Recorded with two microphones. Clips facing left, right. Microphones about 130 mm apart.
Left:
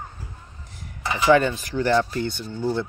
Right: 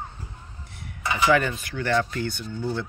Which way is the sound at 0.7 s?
35° left (ahead or behind).